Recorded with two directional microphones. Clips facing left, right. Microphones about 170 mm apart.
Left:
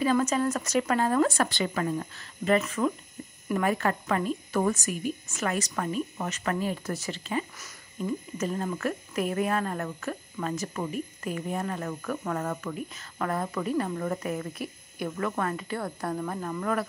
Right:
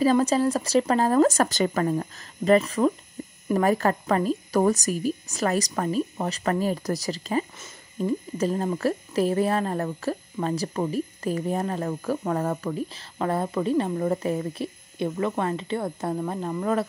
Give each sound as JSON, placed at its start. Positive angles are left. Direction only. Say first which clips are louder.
{"t": 0.0, "sound": "speech", "louder": "right 4 dB", "side_deg": -35}